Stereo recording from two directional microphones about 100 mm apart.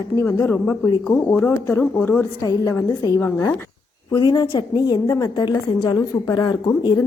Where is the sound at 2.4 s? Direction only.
35° left (ahead or behind).